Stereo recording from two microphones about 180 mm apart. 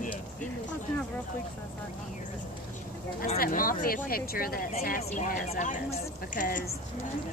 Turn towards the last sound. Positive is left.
turn(degrees=45)  # may be behind; listen again after turning